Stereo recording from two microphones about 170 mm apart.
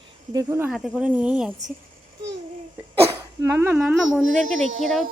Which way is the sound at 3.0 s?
15° right (ahead or behind).